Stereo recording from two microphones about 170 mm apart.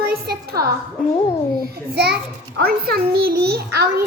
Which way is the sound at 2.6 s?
60° right (ahead or behind).